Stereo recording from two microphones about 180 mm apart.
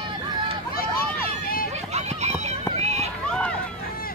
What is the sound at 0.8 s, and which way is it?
Vehicle, 55° left (ahead or behind).